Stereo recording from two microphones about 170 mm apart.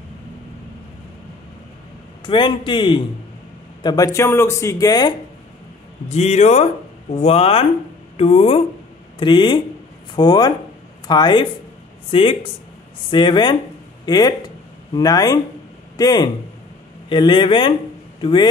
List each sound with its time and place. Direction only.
2.2 s speech: 25° left (ahead or behind)
6.0 s speech: 40° left (ahead or behind)